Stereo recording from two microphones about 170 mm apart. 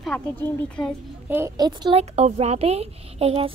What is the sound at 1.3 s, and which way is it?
Speech, 15° right (ahead or behind).